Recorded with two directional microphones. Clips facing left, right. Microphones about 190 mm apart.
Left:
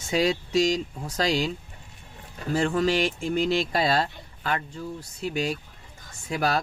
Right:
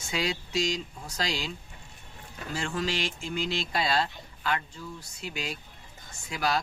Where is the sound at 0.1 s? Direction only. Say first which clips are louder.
Left 8 dB; 40° left (ahead or behind).